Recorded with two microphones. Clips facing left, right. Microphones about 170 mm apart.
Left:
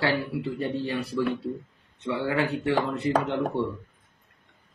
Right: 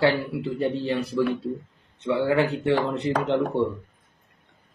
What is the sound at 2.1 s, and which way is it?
Speech, 25° right (ahead or behind).